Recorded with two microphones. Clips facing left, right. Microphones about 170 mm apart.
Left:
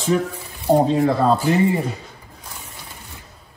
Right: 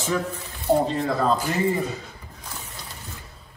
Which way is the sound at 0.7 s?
40° left (ahead or behind).